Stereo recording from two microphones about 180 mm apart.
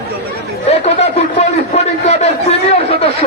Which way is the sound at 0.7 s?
35° left (ahead or behind).